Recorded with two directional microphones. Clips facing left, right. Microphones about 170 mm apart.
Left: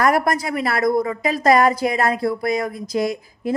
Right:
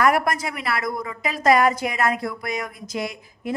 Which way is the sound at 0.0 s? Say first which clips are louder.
Left 2 dB; 40° left (ahead or behind).